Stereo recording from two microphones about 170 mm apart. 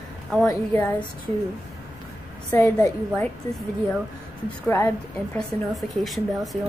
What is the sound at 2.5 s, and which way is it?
Speech, 15° left (ahead or behind).